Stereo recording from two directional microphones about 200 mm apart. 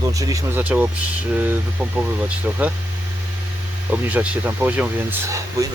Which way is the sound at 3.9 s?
5° right (ahead or behind).